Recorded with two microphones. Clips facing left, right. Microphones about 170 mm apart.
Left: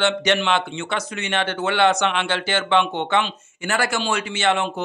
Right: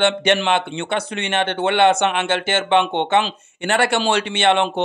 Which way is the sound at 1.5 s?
25° right (ahead or behind).